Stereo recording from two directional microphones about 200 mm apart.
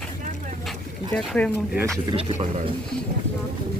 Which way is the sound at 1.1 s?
5° left (ahead or behind).